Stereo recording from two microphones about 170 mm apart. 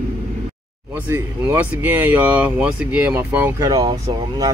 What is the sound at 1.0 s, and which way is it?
Speech, 10° right (ahead or behind).